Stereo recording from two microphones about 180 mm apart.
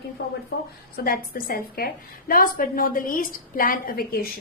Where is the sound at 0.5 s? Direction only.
70° left (ahead or behind).